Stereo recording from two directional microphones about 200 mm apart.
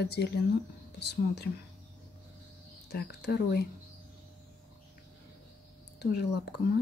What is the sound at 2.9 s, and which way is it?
Speech, 55° left (ahead or behind).